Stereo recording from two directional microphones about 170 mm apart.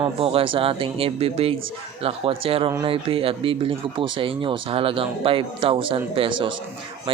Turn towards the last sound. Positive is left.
turn(degrees=-30)  # may be behind; listen again after turning